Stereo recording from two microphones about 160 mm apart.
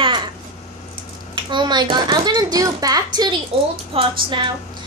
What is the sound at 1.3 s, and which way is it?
A woman's voice, 30° right (ahead or behind).